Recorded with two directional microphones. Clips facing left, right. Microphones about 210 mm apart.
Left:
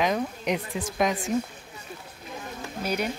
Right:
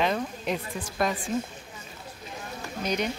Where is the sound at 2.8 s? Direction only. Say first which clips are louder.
Even; 10° left (ahead or behind).